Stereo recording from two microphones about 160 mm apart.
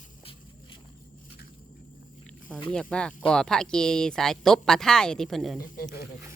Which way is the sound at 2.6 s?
5° left (ahead or behind).